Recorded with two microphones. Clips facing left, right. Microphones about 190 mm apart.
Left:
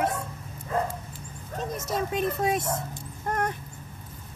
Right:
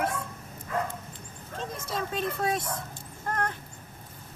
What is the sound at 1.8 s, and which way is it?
Speech, 20° left (ahead or behind).